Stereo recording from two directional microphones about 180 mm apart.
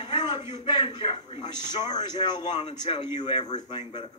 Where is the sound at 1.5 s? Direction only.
25° left (ahead or behind).